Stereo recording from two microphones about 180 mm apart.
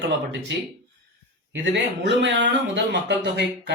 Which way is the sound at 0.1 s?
80° right.